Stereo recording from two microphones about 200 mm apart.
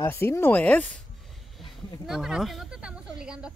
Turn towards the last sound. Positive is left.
turn(degrees=-5)  # may be behind; listen again after turning